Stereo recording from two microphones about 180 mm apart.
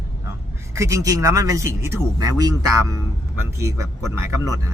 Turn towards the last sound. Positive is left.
turn(degrees=-15)  # may be behind; listen again after turning